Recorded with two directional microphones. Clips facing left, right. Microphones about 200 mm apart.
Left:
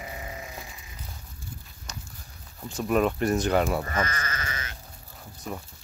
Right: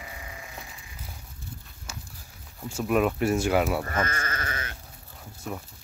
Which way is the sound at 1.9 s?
5° right (ahead or behind).